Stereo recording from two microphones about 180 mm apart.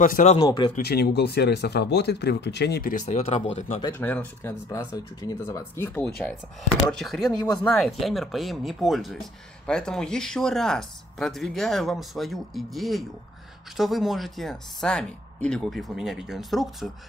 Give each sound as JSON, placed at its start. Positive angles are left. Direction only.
{"t": 0.0, "sound": "speech", "side_deg": 45}
{"t": 0.4, "sound": "speech", "side_deg": 25}
{"t": 0.7, "sound": "speech", "side_deg": 60}
{"t": 3.9, "sound": "speech", "side_deg": 10}